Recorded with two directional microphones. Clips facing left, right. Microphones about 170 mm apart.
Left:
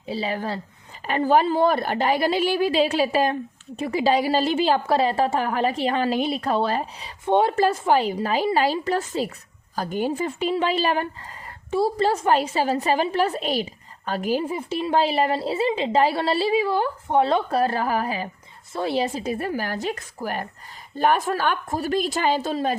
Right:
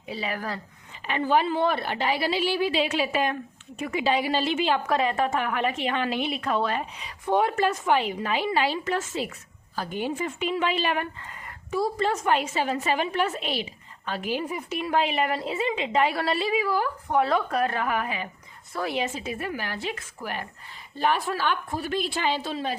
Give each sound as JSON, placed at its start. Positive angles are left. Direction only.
{"t": 0.0, "sound": "a woman's voice", "side_deg": 30}
{"t": 1.0, "sound": "a woman's voice", "side_deg": 40}
{"t": 14.4, "sound": "a woman's voice", "side_deg": 30}